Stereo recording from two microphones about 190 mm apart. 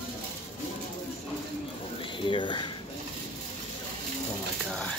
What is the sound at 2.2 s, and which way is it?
Speech, 25° left (ahead or behind).